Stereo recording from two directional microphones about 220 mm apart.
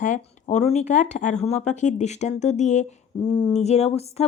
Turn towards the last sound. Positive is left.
turn(degrees=30)  # may be behind; listen again after turning